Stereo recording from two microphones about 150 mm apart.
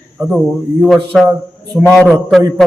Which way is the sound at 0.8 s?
5° right (ahead or behind).